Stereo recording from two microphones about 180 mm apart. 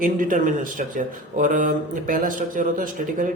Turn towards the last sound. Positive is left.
turn(degrees=-50)  # may be behind; listen again after turning